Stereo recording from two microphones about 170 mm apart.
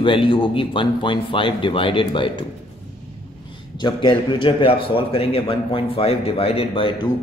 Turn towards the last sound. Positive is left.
turn(degrees=35)  # may be behind; listen again after turning